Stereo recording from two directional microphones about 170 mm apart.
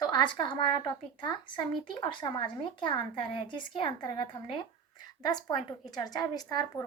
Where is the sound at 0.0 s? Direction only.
25° left (ahead or behind).